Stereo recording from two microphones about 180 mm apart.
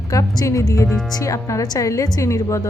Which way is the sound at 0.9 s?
Centre (ahead or behind).